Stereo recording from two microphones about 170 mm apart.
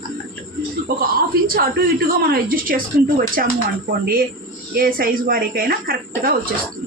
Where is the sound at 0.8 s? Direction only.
60° right (ahead or behind).